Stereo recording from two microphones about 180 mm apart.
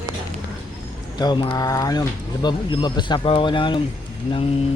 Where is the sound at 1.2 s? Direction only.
25° left (ahead or behind).